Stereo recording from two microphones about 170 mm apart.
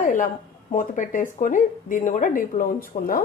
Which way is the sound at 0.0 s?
50° left (ahead or behind).